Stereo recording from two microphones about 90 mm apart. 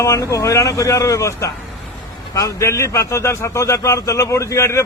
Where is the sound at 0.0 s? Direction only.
35° left (ahead or behind).